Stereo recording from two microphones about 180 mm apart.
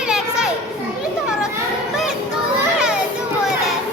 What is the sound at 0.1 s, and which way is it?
Children playing, 5° right (ahead or behind).